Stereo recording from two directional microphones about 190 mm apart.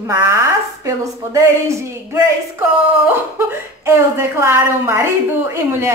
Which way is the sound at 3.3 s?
15° right (ahead or behind).